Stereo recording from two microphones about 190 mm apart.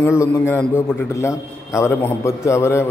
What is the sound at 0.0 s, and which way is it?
A man's voice, 15° left (ahead or behind).